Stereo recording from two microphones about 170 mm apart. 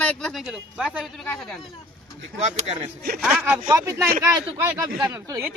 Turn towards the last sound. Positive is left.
turn(degrees=-20)  # may be behind; listen again after turning